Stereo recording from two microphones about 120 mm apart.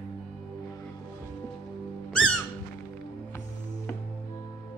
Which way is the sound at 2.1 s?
5° left (ahead or behind).